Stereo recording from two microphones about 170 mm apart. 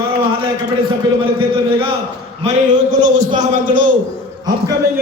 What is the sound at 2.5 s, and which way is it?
A man's voice, 45° right (ahead or behind).